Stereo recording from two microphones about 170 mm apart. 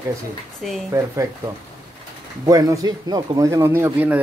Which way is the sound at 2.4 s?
20° right (ahead or behind).